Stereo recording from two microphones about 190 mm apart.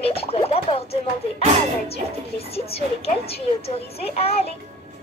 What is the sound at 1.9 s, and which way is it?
A child's voice, 30° left (ahead or behind).